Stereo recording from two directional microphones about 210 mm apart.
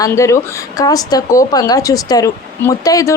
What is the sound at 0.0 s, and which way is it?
A woman's voice, 15° left (ahead or behind).